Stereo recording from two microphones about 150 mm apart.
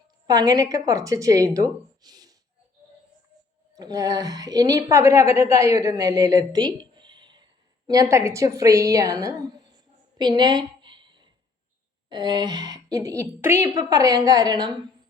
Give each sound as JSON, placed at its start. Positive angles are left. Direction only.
{"t": 0.3, "sound": "a woman's voice", "side_deg": -25}
{"t": 3.8, "sound": "a woman's voice", "side_deg": -25}
{"t": 10.2, "sound": "a sound", "side_deg": -30}
{"t": 12.0, "sound": "a woman's voice", "side_deg": -30}